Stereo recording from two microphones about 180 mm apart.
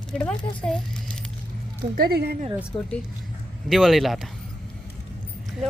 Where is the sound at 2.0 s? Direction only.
60° right (ahead or behind).